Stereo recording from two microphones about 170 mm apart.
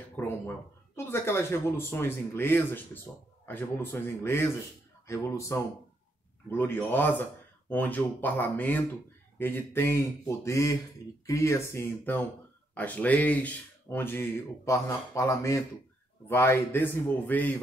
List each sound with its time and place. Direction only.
0.1 s cat: 10° left (ahead or behind)
0.9 s speech: 15° left (ahead or behind)